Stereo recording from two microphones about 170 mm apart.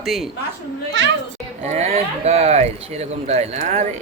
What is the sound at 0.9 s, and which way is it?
Children playing, 90° right.